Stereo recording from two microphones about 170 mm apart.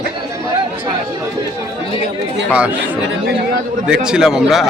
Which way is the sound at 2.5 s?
5° right (ahead or behind).